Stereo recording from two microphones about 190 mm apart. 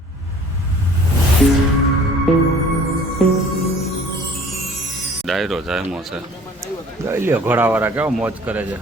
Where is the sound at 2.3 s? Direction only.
Centre (ahead or behind).